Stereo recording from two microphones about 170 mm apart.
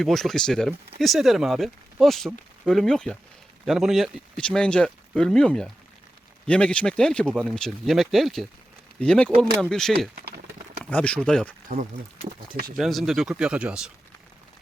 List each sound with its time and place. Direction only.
0.0 s speech: centre (ahead or behind)
10.2 s a sound: 65° right (ahead or behind)
10.8 s speech: 5° left (ahead or behind)
12.7 s speech: centre (ahead or behind)